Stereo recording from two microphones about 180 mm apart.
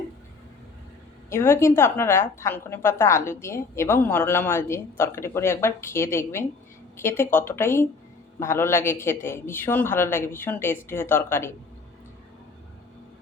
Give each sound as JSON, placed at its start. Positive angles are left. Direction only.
{"t": 1.3, "sound": "a woman's voice", "side_deg": 15}